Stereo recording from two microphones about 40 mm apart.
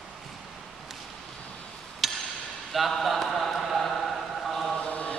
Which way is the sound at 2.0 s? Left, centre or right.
Centre.